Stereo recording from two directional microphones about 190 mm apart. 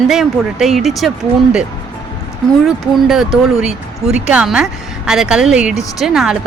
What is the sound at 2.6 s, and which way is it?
Speech, centre (ahead or behind).